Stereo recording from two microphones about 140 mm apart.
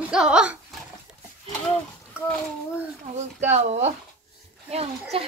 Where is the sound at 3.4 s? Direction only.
55° right (ahead or behind).